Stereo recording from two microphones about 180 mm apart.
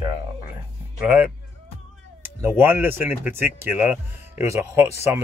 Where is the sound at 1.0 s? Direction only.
10° right (ahead or behind).